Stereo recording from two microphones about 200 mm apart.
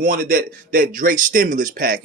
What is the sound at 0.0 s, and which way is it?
A man's voice, 45° right (ahead or behind).